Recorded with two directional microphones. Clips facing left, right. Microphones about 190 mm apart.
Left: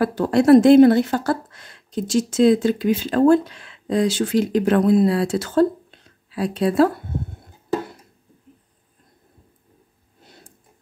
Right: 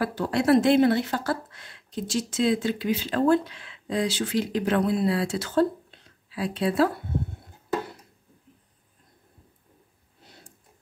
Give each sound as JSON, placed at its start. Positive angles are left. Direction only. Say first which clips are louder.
{"t": 0.0, "sound": "speech", "louder": "left 7 dB", "side_deg": 45}